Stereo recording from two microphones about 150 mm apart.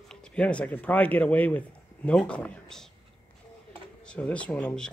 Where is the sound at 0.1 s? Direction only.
5° left (ahead or behind).